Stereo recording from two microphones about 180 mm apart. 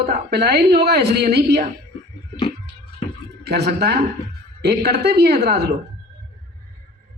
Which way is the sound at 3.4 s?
65° right (ahead or behind).